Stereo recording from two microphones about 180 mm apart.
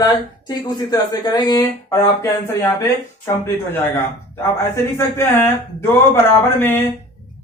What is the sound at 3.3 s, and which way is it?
Speech, 15° left (ahead or behind).